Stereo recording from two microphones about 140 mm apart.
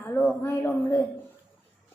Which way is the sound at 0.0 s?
15° left (ahead or behind).